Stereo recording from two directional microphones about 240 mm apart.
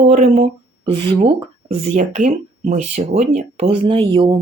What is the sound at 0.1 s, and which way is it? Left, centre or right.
Speech, right.